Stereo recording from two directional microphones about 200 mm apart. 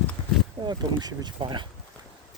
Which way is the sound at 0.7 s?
20° right (ahead or behind).